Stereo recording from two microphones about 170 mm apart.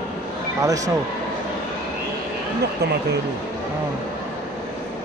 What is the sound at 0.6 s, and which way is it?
Speech, 20° right (ahead or behind).